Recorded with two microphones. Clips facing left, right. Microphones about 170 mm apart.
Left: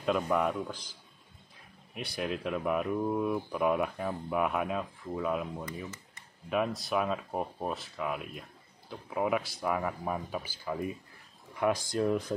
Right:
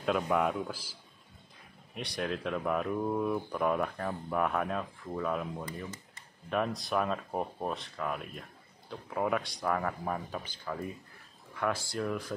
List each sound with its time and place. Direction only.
0.0 s speech: centre (ahead or behind)
2.0 s speech: centre (ahead or behind); by 12.4 s 20° left (ahead or behind)